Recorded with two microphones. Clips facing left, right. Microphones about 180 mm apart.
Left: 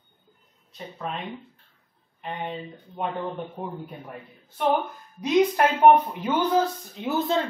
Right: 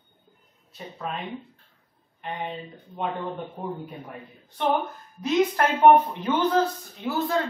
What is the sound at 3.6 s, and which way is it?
A woman's voice, 5° left (ahead or behind).